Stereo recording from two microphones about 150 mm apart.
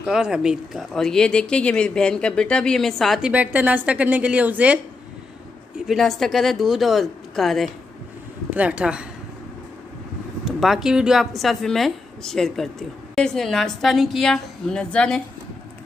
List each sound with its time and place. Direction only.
0.0 s a woman's voice: 5° right (ahead or behind)
5.9 s a woman's voice: centre (ahead or behind)
10.4 s a woman's voice: centre (ahead or behind)